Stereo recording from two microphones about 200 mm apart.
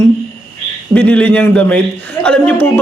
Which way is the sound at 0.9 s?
5° left (ahead or behind).